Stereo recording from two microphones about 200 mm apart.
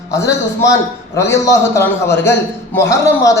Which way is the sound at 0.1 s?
15° left (ahead or behind).